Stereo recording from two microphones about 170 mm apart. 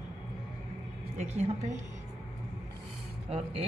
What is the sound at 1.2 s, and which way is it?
Speech, 40° right (ahead or behind).